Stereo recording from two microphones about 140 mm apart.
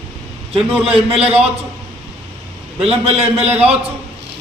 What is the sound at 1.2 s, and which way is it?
Speech, 45° right (ahead or behind).